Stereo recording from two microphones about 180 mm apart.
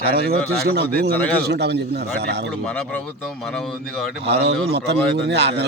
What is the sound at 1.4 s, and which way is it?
A man's voice, 70° right (ahead or behind).